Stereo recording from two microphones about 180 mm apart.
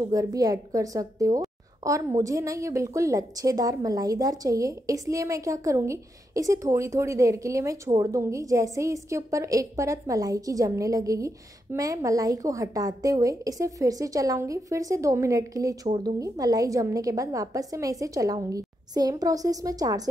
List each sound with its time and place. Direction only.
0.0 s speech: 20° right (ahead or behind)